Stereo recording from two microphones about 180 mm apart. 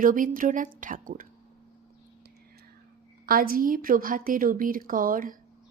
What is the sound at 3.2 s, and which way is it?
A woman's voice, 55° right (ahead or behind).